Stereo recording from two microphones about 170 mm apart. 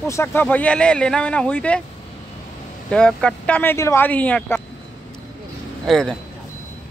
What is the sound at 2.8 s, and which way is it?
Speech, 5° left (ahead or behind).